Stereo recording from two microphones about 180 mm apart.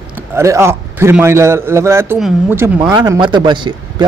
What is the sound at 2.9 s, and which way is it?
Speech, 20° right (ahead or behind).